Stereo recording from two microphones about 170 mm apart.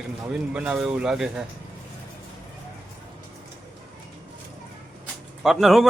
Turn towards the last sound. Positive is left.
turn(degrees=0)  # may be behind; listen again after turning